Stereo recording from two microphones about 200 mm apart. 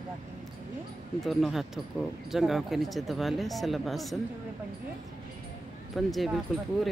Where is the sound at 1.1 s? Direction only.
Centre (ahead or behind).